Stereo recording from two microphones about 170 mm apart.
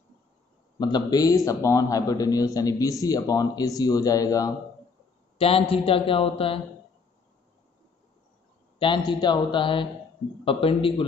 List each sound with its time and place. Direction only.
0.7 s a man's voice: 25° left (ahead or behind)
5.4 s a man's voice: 35° left (ahead or behind)
8.7 s a man's voice: 30° left (ahead or behind)